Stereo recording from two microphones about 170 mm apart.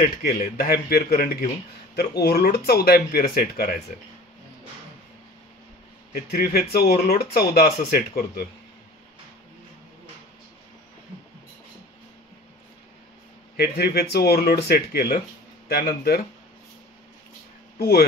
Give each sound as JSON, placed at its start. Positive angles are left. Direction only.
{"t": 0.0, "sound": "speech", "side_deg": 60}
{"t": 6.1, "sound": "speech", "side_deg": 65}
{"t": 13.6, "sound": "speech", "side_deg": 65}
{"t": 17.7, "sound": "speech", "side_deg": 65}